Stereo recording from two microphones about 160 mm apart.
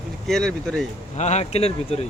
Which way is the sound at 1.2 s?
45° left (ahead or behind).